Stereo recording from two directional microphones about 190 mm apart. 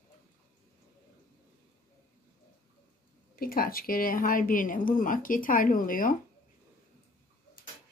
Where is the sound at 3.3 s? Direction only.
50° left (ahead or behind).